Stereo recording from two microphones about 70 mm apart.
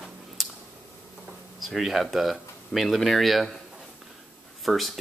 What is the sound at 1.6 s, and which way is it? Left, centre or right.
Speech, centre.